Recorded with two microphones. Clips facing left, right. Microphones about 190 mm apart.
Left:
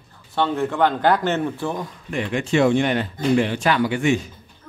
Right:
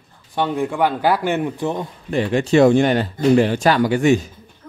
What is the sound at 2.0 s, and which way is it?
Speech, 35° right (ahead or behind).